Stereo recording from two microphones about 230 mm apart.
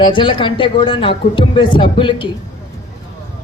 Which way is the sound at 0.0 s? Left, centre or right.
Left.